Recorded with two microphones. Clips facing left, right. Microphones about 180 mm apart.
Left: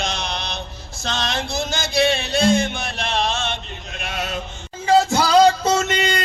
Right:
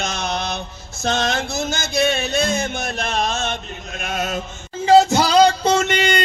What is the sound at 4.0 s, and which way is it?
Chant, 45° right (ahead or behind).